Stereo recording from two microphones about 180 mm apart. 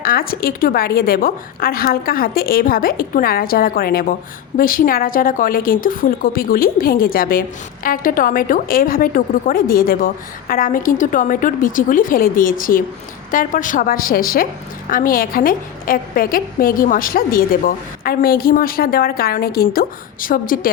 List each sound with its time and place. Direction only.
0.0 s a woman's voice: 55° left (ahead or behind)